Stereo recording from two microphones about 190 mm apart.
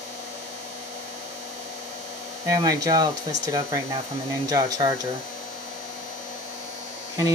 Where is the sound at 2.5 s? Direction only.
20° right (ahead or behind).